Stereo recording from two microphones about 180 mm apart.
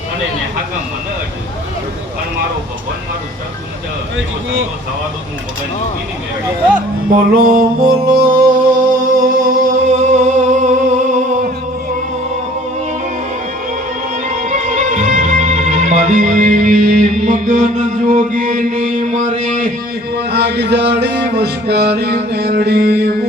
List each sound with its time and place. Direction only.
7.3 s music: 50° right (ahead or behind)
9.1 s a sound: 50° right (ahead or behind)
14.4 s music: 45° right (ahead or behind)
20.1 s music: 65° right (ahead or behind)